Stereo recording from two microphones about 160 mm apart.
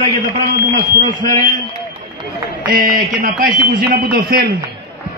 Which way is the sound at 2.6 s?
65° right (ahead or behind).